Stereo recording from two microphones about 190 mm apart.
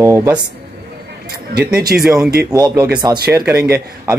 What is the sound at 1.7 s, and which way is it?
Speech, 55° right (ahead or behind).